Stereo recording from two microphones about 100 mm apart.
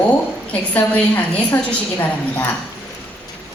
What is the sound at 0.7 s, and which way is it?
Speech, 15° left (ahead or behind).